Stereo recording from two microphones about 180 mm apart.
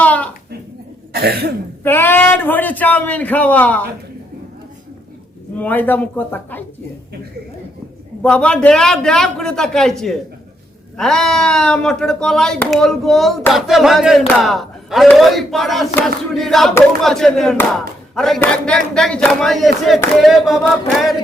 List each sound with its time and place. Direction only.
0.0 s a sound: 10° left (ahead or behind)
1.1 s cough: 60° right (ahead or behind)
1.8 s a man's voice: 10° left (ahead or behind)
5.5 s a man's voice: 10° left (ahead or behind)
8.2 s a man's voice: 5° left (ahead or behind)